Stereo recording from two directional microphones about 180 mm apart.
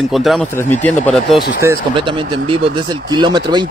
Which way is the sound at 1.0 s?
Centre (ahead or behind).